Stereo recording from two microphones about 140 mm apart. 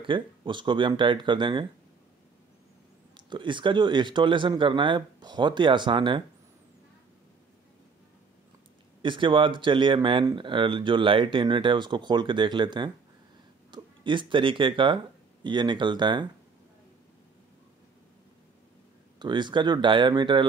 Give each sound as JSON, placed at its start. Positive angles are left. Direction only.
{"t": 0.0, "sound": "speech", "side_deg": -35}
{"t": 3.2, "sound": "speech", "side_deg": -35}
{"t": 9.0, "sound": "speech", "side_deg": -35}
{"t": 19.1, "sound": "speech", "side_deg": -30}